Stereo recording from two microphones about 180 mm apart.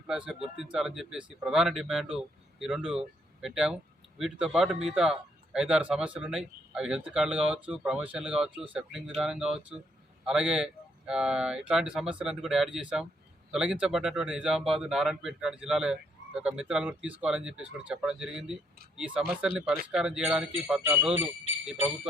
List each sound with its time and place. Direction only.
0.1 s speech: 5° right (ahead or behind)
0.3 s speech: 35° right (ahead or behind)
0.7 s speech: centre (ahead or behind)